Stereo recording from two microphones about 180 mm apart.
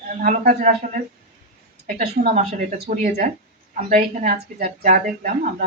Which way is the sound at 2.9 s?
50° right (ahead or behind).